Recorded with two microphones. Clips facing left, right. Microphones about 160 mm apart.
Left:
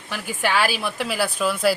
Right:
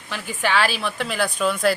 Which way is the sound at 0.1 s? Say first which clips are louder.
Even; 10° left (ahead or behind).